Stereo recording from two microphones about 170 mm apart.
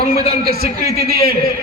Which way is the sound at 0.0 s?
45° left (ahead or behind).